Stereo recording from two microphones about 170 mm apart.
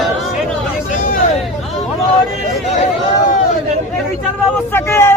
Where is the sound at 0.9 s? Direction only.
50° left (ahead or behind).